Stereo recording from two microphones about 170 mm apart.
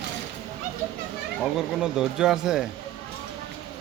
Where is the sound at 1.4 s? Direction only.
5° right (ahead or behind).